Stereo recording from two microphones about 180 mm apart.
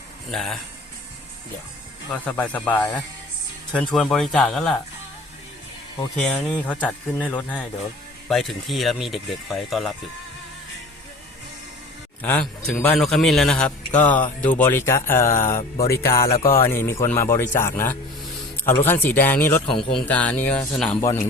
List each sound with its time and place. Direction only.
0.3 s a man's voice: centre (ahead or behind)
2.2 s a man's voice: 10° left (ahead or behind)
6.1 s a man's voice: 5° left (ahead or behind)
12.2 s a man's voice: 10° left (ahead or behind)
15.3 s speech: 45° left (ahead or behind)
15.9 s a man's voice: 15° left (ahead or behind)